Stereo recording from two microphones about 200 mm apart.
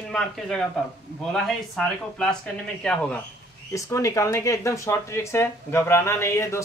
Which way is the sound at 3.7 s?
15° left (ahead or behind).